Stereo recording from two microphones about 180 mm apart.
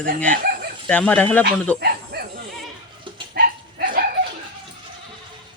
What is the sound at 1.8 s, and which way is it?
Dog, 60° right (ahead or behind).